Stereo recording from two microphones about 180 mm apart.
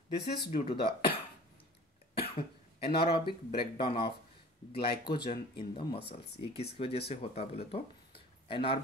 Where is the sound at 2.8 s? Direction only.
60° left (ahead or behind).